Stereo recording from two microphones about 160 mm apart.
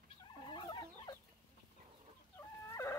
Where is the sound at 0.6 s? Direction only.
25° left (ahead or behind).